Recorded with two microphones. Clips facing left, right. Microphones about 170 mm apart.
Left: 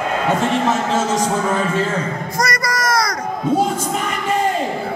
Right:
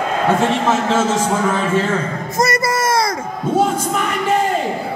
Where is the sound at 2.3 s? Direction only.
25° right (ahead or behind).